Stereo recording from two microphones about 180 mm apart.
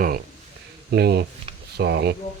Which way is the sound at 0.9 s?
65° right (ahead or behind).